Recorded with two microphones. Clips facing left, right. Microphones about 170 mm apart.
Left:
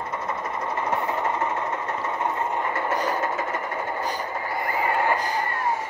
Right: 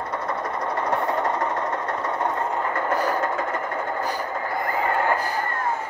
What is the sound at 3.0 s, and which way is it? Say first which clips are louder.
Vehicle: right 2 dB; 10° left (ahead or behind).